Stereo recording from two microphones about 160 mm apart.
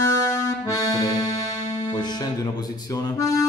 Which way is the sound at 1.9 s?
25° left (ahead or behind).